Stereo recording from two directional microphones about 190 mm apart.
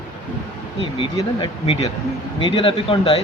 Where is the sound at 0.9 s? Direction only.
25° left (ahead or behind).